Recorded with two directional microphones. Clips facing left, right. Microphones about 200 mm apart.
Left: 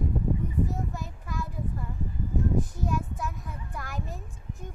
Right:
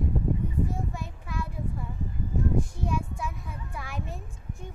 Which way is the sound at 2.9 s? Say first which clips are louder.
Even; centre (ahead or behind).